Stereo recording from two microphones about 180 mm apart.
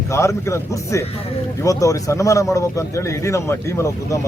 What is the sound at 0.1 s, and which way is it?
A man's voice, 15° left (ahead or behind).